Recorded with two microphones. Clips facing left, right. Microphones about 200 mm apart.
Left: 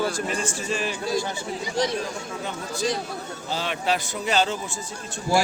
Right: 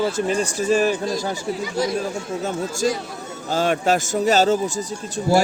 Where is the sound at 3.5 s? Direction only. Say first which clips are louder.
Right 7 dB; 45° right (ahead or behind).